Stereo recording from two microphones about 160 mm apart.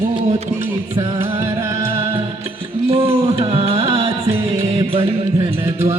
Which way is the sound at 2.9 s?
40° right (ahead or behind).